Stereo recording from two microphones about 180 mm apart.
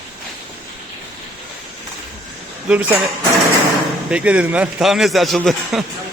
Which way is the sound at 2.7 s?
10° right (ahead or behind).